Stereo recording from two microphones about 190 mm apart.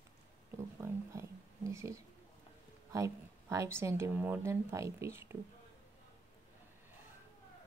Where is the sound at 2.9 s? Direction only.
15° right (ahead or behind).